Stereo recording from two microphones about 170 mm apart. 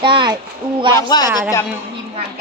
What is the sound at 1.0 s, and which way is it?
Speech, 25° left (ahead or behind).